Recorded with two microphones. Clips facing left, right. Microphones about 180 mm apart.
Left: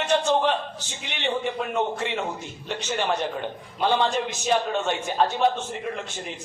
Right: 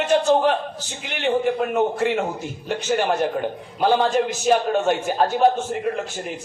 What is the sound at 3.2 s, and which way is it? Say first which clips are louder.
Speech: right 6 dB; 10° right (ahead or behind).